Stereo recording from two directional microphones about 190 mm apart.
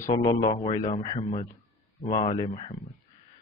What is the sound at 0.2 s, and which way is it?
Speech, 20° left (ahead or behind).